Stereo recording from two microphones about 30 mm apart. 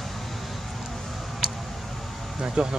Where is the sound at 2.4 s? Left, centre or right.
Right.